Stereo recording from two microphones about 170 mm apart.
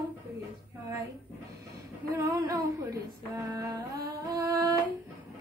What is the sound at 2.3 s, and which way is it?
Singing, 20° right (ahead or behind).